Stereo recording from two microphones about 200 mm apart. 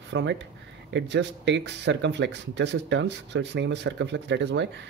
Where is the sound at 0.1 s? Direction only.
65° right (ahead or behind).